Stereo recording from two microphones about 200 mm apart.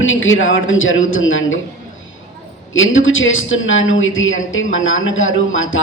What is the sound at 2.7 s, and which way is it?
A woman's voice, 80° left.